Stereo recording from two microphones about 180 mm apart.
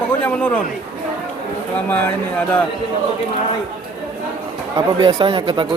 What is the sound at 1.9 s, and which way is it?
Speech, 10° left (ahead or behind).